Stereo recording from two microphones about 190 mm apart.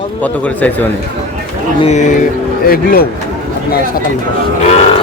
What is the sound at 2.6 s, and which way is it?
Speech, 50° left (ahead or behind).